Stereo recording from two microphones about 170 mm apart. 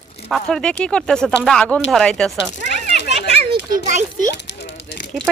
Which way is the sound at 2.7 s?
45° right (ahead or behind).